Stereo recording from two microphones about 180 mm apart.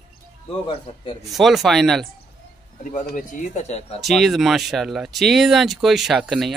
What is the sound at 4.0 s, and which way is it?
Speech, centre (ahead or behind).